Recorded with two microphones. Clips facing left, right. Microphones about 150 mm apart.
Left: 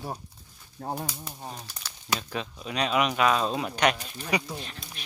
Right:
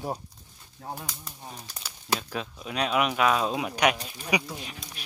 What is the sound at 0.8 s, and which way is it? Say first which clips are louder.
Speech: left 4 dB; 40° left (ahead or behind).